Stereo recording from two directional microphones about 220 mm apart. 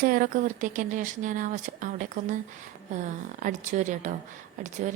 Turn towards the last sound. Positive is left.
turn(degrees=-35)  # may be behind; listen again after turning